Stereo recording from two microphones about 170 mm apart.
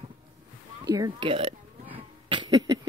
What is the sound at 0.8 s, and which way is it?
Speech, 20° right (ahead or behind).